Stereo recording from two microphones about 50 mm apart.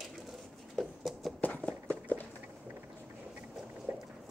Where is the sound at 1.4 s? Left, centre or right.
Left.